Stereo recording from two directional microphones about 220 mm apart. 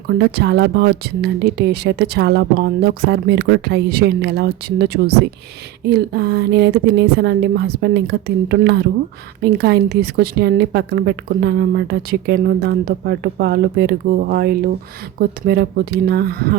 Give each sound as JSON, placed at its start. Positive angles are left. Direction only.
{"t": 0.2, "sound": "speech", "side_deg": -50}